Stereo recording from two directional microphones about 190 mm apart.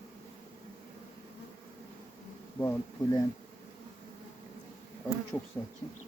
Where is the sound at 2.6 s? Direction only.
15° left (ahead or behind).